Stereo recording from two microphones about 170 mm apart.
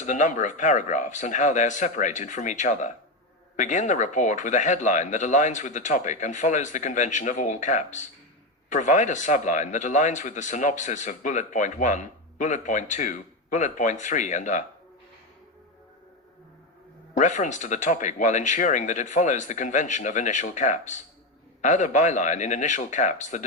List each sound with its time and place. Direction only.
0.0 s speech: 45° left (ahead or behind)
17.2 s speech: 45° left (ahead or behind)